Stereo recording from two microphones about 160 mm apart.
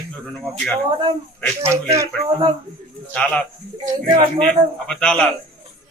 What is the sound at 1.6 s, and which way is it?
Speech, 15° right (ahead or behind).